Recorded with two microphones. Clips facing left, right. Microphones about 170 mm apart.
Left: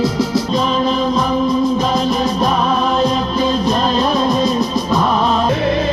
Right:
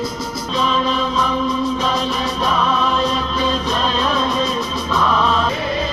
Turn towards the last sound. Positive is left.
turn(degrees=60)  # may be behind; listen again after turning